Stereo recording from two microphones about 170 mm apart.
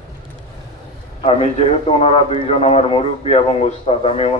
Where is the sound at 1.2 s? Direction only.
35° left (ahead or behind).